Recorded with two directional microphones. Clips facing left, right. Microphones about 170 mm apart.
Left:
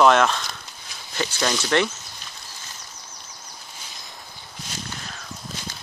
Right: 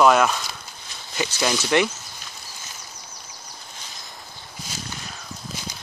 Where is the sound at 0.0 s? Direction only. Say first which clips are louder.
Even; 5° right (ahead or behind).